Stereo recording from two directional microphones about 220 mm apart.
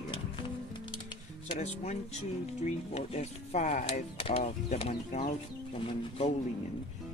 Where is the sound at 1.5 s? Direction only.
30° left (ahead or behind).